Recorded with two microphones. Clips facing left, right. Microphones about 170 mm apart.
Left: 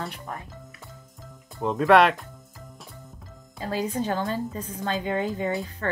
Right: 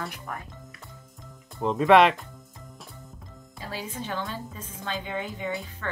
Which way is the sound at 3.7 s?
40° left (ahead or behind).